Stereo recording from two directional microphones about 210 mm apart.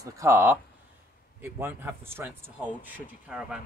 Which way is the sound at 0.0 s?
15° right (ahead or behind).